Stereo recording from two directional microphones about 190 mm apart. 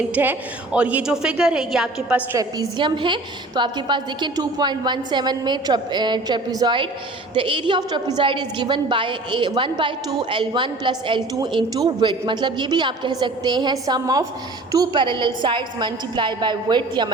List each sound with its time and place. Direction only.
0.1 s a woman's voice: 10° right (ahead or behind)
2.4 s a woman's voice: 20° right (ahead or behind)